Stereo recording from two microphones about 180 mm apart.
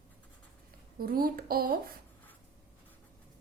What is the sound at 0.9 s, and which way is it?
Speech, 55° right (ahead or behind).